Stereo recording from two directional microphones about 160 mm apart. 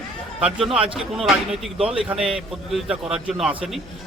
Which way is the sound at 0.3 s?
5° right (ahead or behind).